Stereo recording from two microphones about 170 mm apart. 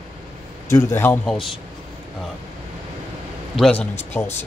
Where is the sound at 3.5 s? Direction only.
5° left (ahead or behind).